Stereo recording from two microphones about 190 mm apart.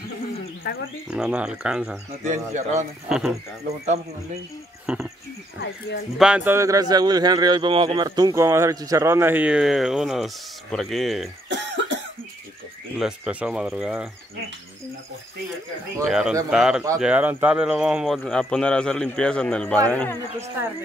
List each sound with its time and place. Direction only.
0.7 s speech: 55° left (ahead or behind)
1.1 s speech: 5° right (ahead or behind)
2.2 s speech: 40° right (ahead or behind)
3.1 s speech: 5° right (ahead or behind)
4.9 s speech: 5° right (ahead or behind)
6.1 s a man's voice: 5° right (ahead or behind)
11.4 s cough: 75° right (ahead or behind)
13.0 s speech: 5° right (ahead or behind)
16.1 s speech: centre (ahead or behind)